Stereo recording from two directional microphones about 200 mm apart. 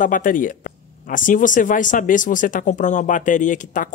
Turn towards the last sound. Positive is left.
turn(degrees=40)  # may be behind; listen again after turning